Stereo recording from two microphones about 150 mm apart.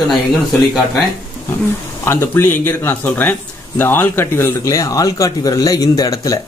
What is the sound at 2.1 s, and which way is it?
Speech, 15° left (ahead or behind).